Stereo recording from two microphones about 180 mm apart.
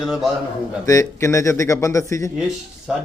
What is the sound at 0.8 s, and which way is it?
Speech, 15° left (ahead or behind).